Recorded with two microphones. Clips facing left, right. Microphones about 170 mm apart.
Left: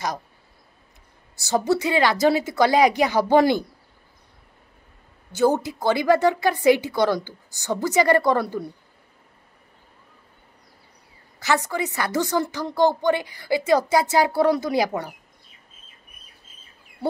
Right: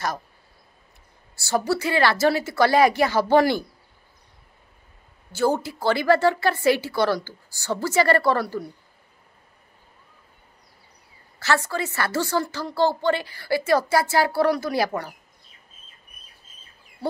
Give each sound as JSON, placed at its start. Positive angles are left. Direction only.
{"t": 1.3, "sound": "a woman's voice", "side_deg": 20}
{"t": 5.3, "sound": "a woman's voice", "side_deg": 20}
{"t": 11.3, "sound": "a woman's voice", "side_deg": 15}